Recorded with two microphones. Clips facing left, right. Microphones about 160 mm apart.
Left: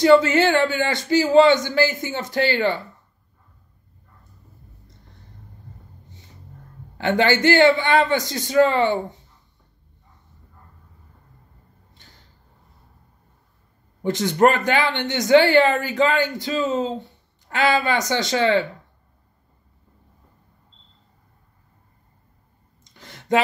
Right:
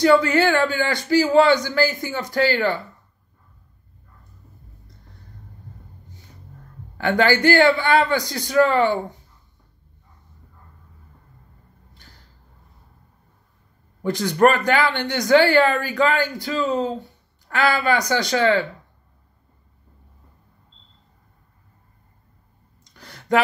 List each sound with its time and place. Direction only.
0.0 s speech: 20° left (ahead or behind)
6.0 s music: 20° left (ahead or behind)
7.0 s speech: 20° left (ahead or behind)
11.9 s a sound: 20° left (ahead or behind)
14.0 s speech: 20° left (ahead or behind)
22.8 s a sound: 20° left (ahead or behind)